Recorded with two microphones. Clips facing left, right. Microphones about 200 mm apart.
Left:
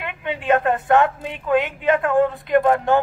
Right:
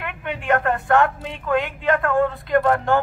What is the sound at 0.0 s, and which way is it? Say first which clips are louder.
Speech: left 2 dB; 20° left (ahead or behind).